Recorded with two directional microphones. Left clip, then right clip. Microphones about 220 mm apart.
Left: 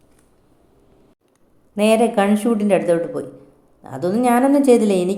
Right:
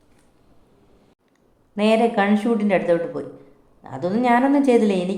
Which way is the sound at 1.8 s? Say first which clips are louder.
Left 3 dB; 15° left (ahead or behind).